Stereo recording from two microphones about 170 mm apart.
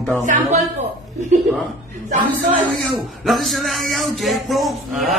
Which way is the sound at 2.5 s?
Centre (ahead or behind).